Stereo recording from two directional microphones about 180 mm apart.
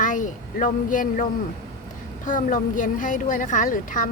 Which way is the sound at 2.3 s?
50° left (ahead or behind).